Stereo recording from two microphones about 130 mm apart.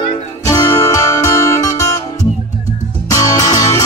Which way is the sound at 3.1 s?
25° left (ahead or behind).